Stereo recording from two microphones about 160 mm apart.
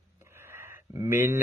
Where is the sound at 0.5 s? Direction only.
15° right (ahead or behind).